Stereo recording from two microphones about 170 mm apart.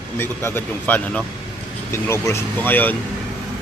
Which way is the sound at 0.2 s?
15° left (ahead or behind).